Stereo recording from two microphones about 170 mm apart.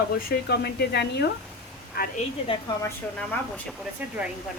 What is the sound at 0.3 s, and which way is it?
Speech, 75° left (ahead or behind).